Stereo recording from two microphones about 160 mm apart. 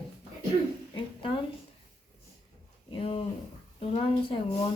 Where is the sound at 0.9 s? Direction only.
35° left (ahead or behind).